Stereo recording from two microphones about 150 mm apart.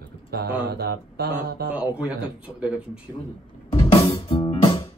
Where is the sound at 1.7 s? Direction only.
10° right (ahead or behind).